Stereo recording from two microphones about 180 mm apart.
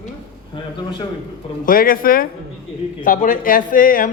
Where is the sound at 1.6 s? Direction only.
50° left (ahead or behind).